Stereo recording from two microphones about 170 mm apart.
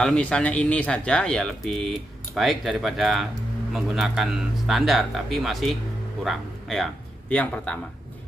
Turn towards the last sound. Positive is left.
turn(degrees=10)  # may be behind; listen again after turning